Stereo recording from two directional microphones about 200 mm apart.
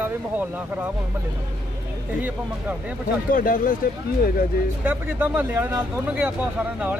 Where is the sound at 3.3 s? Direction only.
40° left (ahead or behind).